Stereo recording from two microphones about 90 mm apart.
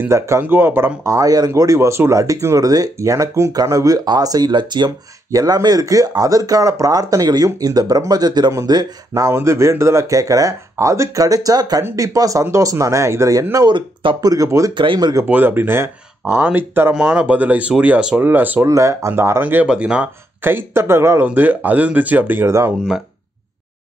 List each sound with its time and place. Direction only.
0.0 s speech: 25° right (ahead or behind); by 4.9 s 55° right (ahead or behind)
5.3 s speech: 45° right (ahead or behind)
9.3 s speech: 30° right (ahead or behind)
11.8 s speech: 35° right (ahead or behind)
13.7 s speech: 65° right (ahead or behind)
14.2 s speech: 40° right (ahead or behind)
14.7 s speech: 65° right (ahead or behind)
15.2 s speech: 20° right (ahead or behind)
16.9 s speech: 10° right (ahead or behind)
18.7 s speech: 35° right (ahead or behind); by 20.1 s 10° right (ahead or behind)
20.4 s speech: 25° right (ahead or behind)